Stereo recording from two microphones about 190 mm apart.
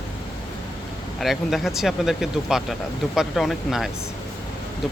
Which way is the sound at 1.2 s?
Centre (ahead or behind).